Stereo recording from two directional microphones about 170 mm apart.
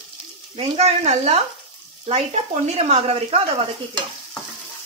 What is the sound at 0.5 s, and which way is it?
A woman's voice, 40° right (ahead or behind).